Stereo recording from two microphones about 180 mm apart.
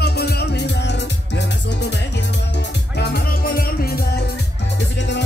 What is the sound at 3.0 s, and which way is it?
Music, 60° left (ahead or behind).